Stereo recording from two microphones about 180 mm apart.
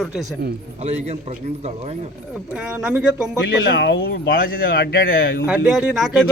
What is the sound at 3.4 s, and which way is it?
Speech, 60° left (ahead or behind).